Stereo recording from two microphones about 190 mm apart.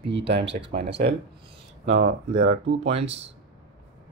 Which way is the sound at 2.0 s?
75° right (ahead or behind).